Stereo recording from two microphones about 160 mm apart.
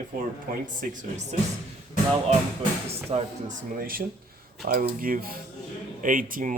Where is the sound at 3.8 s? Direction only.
65° right (ahead or behind).